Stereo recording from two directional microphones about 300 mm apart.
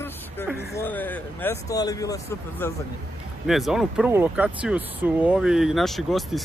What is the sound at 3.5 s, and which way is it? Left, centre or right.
Speech, centre.